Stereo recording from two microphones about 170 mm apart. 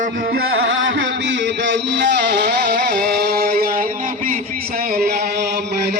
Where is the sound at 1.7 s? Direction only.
90° right; by 3.6 s 70° right (ahead or behind).